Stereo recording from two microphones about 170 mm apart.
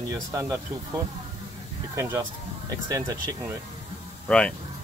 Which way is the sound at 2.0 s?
15° right (ahead or behind).